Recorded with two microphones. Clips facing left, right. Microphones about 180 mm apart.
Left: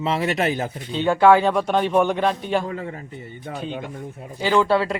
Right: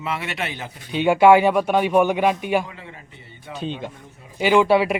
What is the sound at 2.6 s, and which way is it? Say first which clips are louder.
Speech: left 10 dB; 45° left (ahead or behind).